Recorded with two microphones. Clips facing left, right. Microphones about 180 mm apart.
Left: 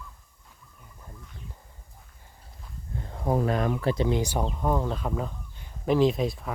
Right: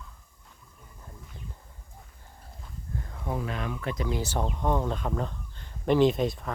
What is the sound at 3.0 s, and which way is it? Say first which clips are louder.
Speech: left 8 dB; 35° left (ahead or behind).